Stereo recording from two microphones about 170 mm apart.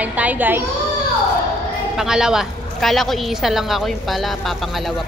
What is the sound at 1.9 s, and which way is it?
A woman's voice, 5° right (ahead or behind).